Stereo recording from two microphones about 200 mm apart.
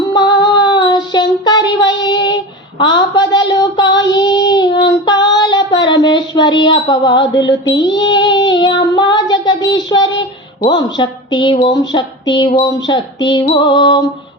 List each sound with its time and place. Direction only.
0.1 s child singing: 20° left (ahead or behind)
10.6 s speech: 20° left (ahead or behind)